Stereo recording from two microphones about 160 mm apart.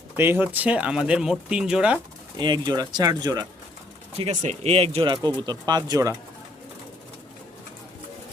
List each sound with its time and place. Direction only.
0.2 s speech: 15° right (ahead or behind)
2.4 s speech: 25° right (ahead or behind)
4.2 s speech: 50° right (ahead or behind); by 6.1 s 20° right (ahead or behind)